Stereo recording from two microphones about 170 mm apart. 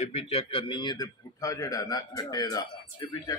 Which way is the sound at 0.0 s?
35° left (ahead or behind).